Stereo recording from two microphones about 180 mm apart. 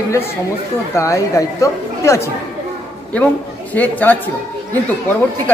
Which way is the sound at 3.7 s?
10° left (ahead or behind).